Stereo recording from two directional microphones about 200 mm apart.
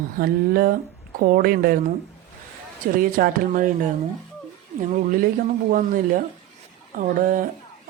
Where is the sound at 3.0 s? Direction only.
45° right (ahead or behind).